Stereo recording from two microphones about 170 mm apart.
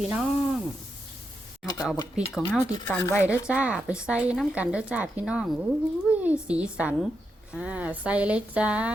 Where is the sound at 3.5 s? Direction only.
5° right (ahead or behind).